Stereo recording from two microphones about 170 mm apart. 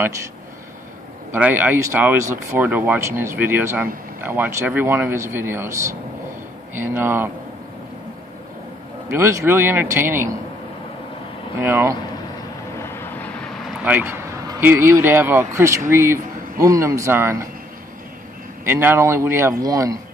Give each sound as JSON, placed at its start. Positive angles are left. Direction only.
{"t": 1.3, "sound": "speech", "side_deg": -10}
{"t": 9.2, "sound": "speech", "side_deg": -15}
{"t": 11.5, "sound": "speech", "side_deg": -15}
{"t": 12.8, "sound": "vehicle", "side_deg": 15}
{"t": 13.8, "sound": "speech", "side_deg": -10}
{"t": 18.7, "sound": "speech", "side_deg": -10}